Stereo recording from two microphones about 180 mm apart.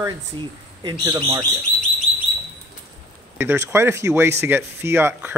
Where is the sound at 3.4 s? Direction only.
15° right (ahead or behind).